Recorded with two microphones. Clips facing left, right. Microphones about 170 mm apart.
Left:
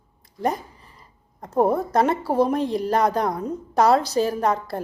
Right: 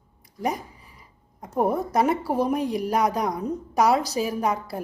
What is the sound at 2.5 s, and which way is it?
A woman's voice, 10° right (ahead or behind).